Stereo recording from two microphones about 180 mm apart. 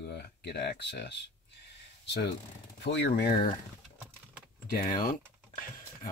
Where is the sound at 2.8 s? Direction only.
70° left (ahead or behind).